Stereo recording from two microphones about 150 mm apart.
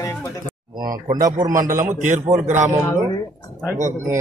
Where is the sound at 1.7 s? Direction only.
60° right (ahead or behind).